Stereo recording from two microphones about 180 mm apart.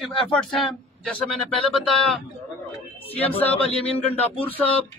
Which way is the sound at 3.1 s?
30° left (ahead or behind).